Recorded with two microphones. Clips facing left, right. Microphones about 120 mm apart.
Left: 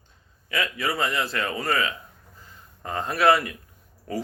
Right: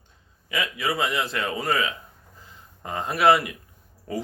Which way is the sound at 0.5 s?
15° right (ahead or behind).